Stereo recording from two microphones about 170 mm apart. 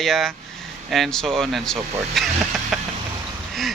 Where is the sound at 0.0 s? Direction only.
Centre (ahead or behind).